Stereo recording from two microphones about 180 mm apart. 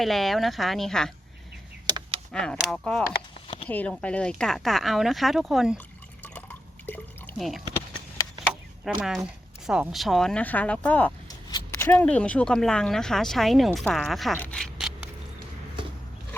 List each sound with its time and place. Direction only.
0.0 s speech: centre (ahead or behind)
2.3 s speech: 5° left (ahead or behind)
6.2 s drip: 10° left (ahead or behind)
8.8 s speech: centre (ahead or behind)
11.3 s a sound: 20° left (ahead or behind)
11.9 s speech: 10° left (ahead or behind)
14.3 s a sound: 5° left (ahead or behind)